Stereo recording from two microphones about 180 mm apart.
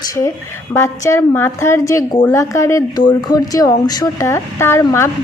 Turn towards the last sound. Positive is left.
turn(degrees=15)  # may be behind; listen again after turning